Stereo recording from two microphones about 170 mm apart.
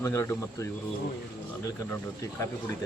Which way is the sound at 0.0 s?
15° left (ahead or behind).